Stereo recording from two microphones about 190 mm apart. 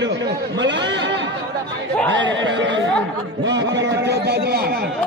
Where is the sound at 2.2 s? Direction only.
75° right (ahead or behind).